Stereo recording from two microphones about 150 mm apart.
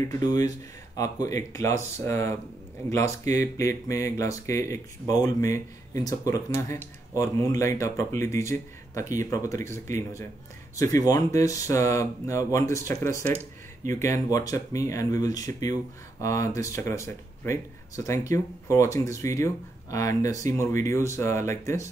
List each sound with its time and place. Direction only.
0.0 s speech: 20° left (ahead or behind)